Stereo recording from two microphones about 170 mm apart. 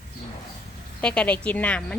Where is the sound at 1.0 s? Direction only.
5° left (ahead or behind).